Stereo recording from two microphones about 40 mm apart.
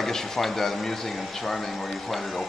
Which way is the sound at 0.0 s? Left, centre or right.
Centre.